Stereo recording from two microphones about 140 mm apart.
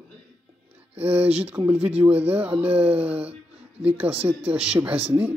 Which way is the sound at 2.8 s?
45° right (ahead or behind).